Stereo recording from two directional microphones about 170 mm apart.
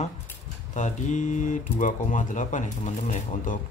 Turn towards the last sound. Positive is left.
turn(degrees=45)  # may be behind; listen again after turning